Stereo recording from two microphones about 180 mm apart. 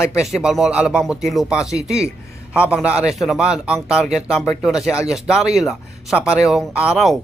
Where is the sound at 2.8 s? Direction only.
5° right (ahead or behind).